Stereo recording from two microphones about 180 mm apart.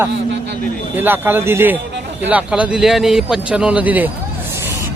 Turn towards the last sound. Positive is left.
turn(degrees=-10)  # may be behind; listen again after turning